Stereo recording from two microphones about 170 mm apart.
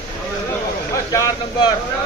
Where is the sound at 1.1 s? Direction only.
20° left (ahead or behind).